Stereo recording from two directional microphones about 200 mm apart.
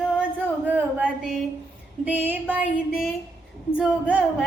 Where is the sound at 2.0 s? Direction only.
10° right (ahead or behind).